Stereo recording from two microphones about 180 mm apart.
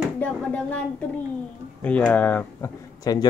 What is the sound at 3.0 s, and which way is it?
Speech, 20° left (ahead or behind).